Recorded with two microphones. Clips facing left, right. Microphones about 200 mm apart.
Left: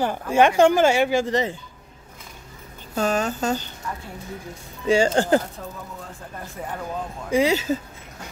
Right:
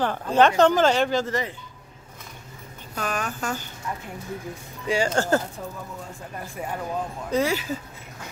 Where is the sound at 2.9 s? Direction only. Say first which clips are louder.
Left 7 dB; 25° left (ahead or behind).